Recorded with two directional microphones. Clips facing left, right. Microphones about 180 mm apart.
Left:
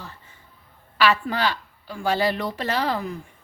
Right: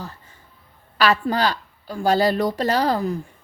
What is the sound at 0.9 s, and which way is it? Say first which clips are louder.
A woman's voice: right 2 dB; 40° right (ahead or behind).